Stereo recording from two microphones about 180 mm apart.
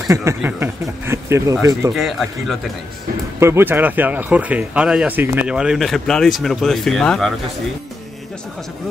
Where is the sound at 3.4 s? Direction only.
15° right (ahead or behind).